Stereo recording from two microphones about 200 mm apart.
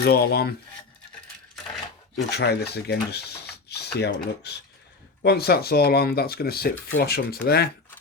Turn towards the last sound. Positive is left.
turn(degrees=50)  # may be behind; listen again after turning